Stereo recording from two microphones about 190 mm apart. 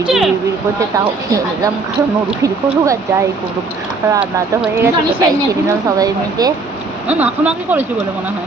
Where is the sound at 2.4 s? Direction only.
15° right (ahead or behind).